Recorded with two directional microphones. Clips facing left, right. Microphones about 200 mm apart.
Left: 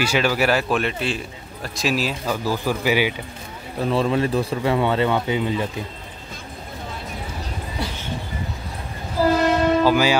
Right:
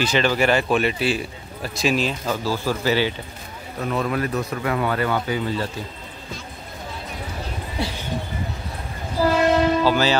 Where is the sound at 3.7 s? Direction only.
30° left (ahead or behind).